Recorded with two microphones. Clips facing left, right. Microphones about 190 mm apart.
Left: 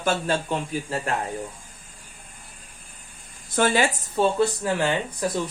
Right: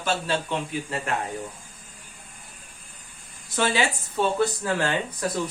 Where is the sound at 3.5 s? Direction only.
50° left (ahead or behind).